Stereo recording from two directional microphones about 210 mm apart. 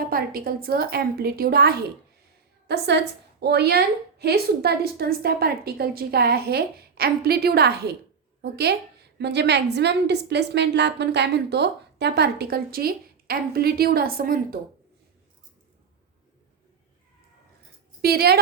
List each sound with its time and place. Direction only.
0.0 s a woman's voice: 45° right (ahead or behind)
18.0 s a woman's voice: 50° right (ahead or behind)